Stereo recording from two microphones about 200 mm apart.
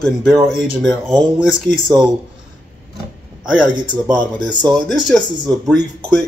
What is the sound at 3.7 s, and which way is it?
Speech, 20° right (ahead or behind).